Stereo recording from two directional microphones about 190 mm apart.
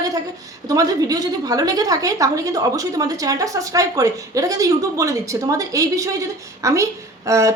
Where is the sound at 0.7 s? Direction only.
20° right (ahead or behind).